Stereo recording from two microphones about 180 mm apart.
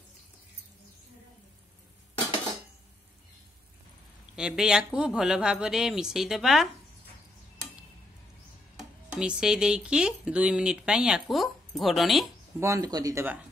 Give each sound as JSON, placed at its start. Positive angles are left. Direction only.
{"t": 4.4, "sound": "speech", "side_deg": -5}
{"t": 9.2, "sound": "speech", "side_deg": -5}
{"t": 12.5, "sound": "speech", "side_deg": -15}